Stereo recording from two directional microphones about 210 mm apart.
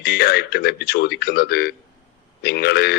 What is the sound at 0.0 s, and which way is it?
A man's voice, 50° left (ahead or behind).